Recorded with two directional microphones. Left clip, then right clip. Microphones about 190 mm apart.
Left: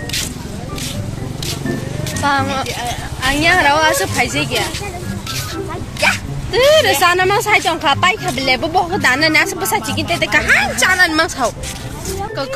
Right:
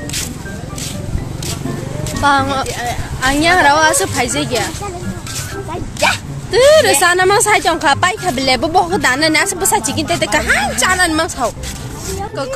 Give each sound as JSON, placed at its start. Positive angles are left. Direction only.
{"t": 2.2, "sound": "a woman's voice", "side_deg": -25}
{"t": 6.5, "sound": "a woman's voice", "side_deg": -20}